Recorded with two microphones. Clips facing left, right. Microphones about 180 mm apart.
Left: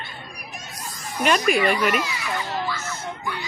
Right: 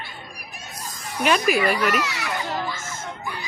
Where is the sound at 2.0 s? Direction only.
70° right (ahead or behind).